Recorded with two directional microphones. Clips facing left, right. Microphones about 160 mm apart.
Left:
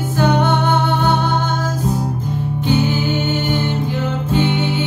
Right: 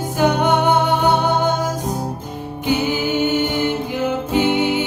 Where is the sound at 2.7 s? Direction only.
15° right (ahead or behind).